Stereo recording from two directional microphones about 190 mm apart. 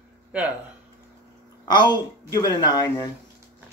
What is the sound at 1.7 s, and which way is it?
A woman's voice, 20° left (ahead or behind).